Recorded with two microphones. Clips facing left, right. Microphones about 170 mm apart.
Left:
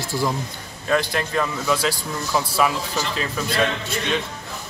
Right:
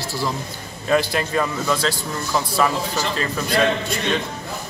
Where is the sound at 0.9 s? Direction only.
5° right (ahead or behind).